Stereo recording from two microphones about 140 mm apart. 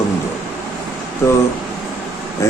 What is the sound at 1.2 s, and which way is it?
Speech, 20° left (ahead or behind).